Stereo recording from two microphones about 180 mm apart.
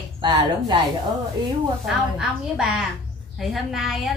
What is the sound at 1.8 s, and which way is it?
A woman's voice, centre (ahead or behind).